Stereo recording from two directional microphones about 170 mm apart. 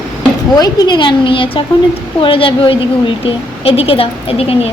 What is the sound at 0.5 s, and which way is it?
A woman's voice, 25° left (ahead or behind).